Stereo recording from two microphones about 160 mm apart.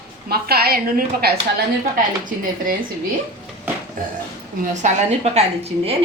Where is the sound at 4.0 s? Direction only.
60° right (ahead or behind).